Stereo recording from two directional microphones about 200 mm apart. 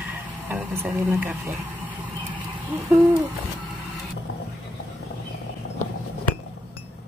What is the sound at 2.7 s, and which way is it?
Hoot, 5° right (ahead or behind).